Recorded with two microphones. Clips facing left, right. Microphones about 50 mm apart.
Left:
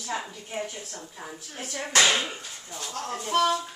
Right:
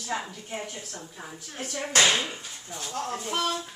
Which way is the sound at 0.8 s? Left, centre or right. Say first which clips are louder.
Left 1 dB; centre.